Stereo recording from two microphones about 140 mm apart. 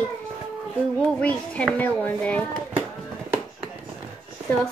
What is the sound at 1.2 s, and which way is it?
Speech, 10° left (ahead or behind).